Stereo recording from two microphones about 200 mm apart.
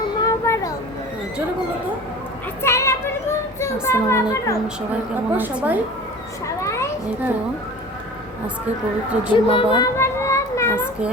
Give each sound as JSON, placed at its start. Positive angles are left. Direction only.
{"t": 0.2, "sound": "a sound", "side_deg": 15}
{"t": 2.6, "sound": "children playing", "side_deg": 15}
{"t": 3.8, "sound": "a child's voice", "side_deg": 15}
{"t": 5.4, "sound": "a woman's voice", "side_deg": -10}
{"t": 6.6, "sound": "children playing", "side_deg": 15}
{"t": 9.3, "sound": "a sound", "side_deg": 25}